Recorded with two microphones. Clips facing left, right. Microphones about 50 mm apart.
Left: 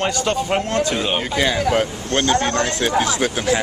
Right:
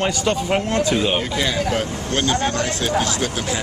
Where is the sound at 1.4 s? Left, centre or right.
Centre.